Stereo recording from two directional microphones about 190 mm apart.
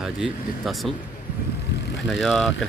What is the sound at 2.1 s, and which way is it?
Speech, centre (ahead or behind).